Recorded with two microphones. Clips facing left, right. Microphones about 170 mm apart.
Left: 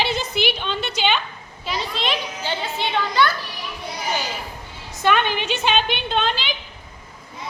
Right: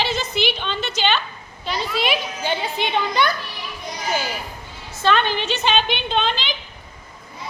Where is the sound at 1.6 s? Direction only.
5° right (ahead or behind).